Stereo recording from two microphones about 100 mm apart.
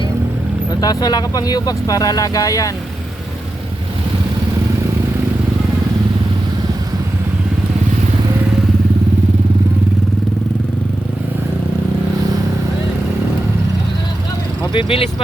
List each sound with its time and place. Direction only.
0.8 s speech: 40° left (ahead or behind)
14.7 s speech: 60° left (ahead or behind)